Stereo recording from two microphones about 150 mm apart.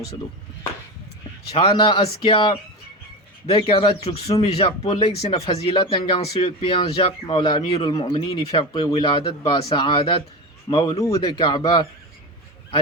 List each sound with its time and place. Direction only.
1.5 s speech: 35° left (ahead or behind)
10.9 s speech: 25° left (ahead or behind)